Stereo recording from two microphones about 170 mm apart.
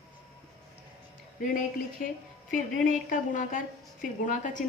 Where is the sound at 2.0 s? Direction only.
50° left (ahead or behind).